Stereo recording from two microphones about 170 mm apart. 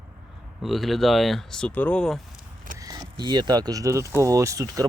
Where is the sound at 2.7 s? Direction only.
20° right (ahead or behind).